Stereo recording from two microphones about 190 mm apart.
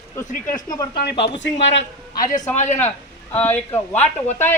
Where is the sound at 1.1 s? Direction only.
25° left (ahead or behind).